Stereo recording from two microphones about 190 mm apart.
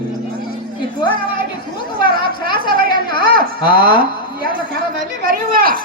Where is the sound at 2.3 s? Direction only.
50° right (ahead or behind).